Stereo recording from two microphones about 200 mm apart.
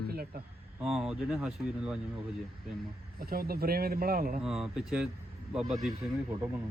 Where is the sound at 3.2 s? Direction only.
50° right (ahead or behind).